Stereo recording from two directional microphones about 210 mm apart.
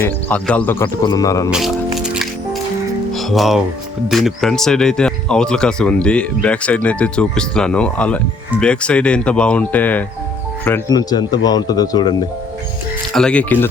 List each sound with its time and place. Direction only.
0.0 s speech: 5° left (ahead or behind)
1.5 s speech: 5° right (ahead or behind)
3.1 s music: centre (ahead or behind)
4.1 s speech: centre (ahead or behind); by 12.1 s 20° left (ahead or behind)
13.1 s speech: 5° left (ahead or behind)